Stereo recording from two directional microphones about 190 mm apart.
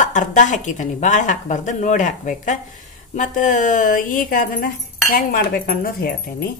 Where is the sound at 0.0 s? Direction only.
40° left (ahead or behind).